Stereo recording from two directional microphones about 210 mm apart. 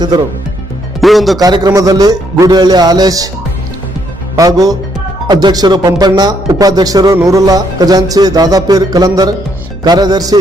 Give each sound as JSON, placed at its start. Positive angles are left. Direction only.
{"t": 1.0, "sound": "speech", "side_deg": 0}
{"t": 1.4, "sound": "a man's voice", "side_deg": -20}
{"t": 4.4, "sound": "a man's voice", "side_deg": -15}